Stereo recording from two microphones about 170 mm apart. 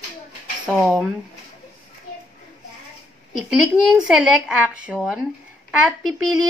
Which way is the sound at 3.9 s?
5° right (ahead or behind).